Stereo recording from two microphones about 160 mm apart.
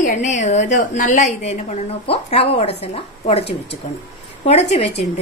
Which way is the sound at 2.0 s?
40° left (ahead or behind).